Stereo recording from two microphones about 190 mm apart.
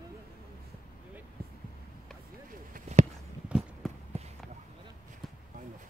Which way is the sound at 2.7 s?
40° right (ahead or behind).